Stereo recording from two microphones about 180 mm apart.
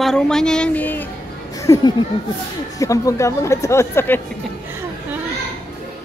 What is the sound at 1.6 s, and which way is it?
Speech, 20° left (ahead or behind).